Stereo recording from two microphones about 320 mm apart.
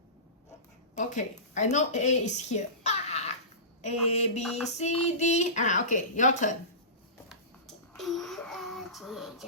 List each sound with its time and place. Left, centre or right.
0.9 s speech: left
7.9 s child singing: centre